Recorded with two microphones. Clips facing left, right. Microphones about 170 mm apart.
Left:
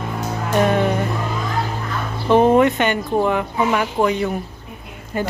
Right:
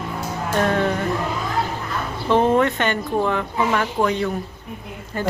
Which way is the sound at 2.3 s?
15° left (ahead or behind).